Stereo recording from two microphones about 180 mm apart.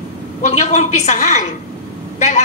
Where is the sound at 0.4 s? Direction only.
40° left (ahead or behind).